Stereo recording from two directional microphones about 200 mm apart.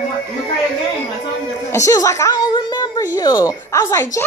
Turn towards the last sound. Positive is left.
turn(degrees=15)  # may be behind; listen again after turning